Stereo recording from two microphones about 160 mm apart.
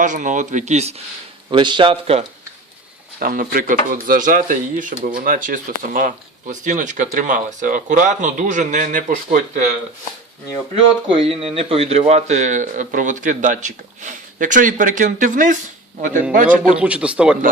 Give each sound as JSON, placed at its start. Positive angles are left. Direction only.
{"t": 0.0, "sound": "speech", "side_deg": -50}
{"t": 1.5, "sound": "speech", "side_deg": -30}
{"t": 3.2, "sound": "speech", "side_deg": -60}
{"t": 11.1, "sound": "speech", "side_deg": -35}
{"t": 16.5, "sound": "a man's voice", "side_deg": -10}